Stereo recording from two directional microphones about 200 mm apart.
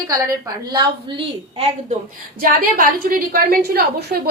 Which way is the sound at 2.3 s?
45° right (ahead or behind).